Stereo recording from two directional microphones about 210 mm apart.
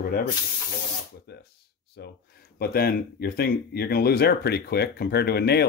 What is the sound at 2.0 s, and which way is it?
Speech, 50° left (ahead or behind).